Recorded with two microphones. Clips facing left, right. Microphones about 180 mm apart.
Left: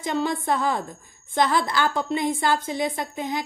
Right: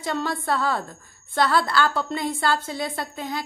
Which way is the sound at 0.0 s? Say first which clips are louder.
Left 2 dB; 15° left (ahead or behind).